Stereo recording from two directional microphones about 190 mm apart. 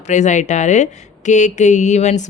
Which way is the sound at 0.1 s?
40° left (ahead or behind).